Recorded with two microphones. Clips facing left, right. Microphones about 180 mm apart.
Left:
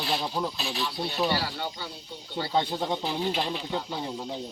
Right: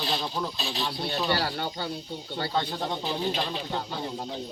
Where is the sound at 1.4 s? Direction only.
55° right (ahead or behind).